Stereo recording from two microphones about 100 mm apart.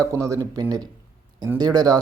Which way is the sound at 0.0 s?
30° right (ahead or behind).